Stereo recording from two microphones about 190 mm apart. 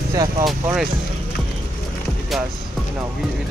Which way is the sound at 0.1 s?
20° right (ahead or behind).